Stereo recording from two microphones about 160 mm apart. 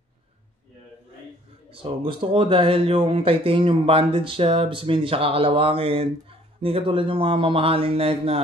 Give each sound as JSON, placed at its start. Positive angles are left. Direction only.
{"t": 1.7, "sound": "speech", "side_deg": -35}